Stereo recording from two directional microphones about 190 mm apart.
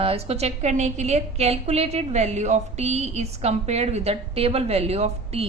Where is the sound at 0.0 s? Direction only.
30° right (ahead or behind).